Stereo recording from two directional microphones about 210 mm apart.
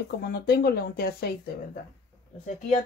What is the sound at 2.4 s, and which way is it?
Speech, 35° left (ahead or behind).